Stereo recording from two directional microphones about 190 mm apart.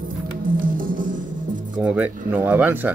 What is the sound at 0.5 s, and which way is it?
Music, 45° right (ahead or behind).